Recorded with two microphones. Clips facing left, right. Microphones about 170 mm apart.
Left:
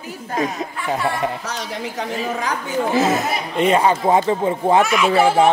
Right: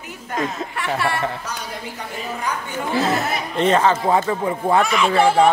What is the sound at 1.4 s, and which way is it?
A woman's voice, 90° left.